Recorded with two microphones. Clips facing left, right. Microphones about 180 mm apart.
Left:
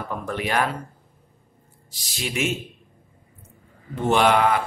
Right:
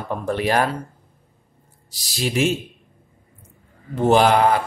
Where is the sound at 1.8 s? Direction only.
35° right (ahead or behind).